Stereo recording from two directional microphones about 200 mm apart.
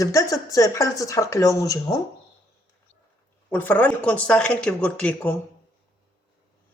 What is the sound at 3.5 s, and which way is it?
Speech, 10° left (ahead or behind).